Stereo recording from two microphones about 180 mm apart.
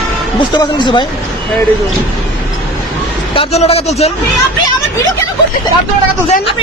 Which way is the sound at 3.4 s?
35° left (ahead or behind).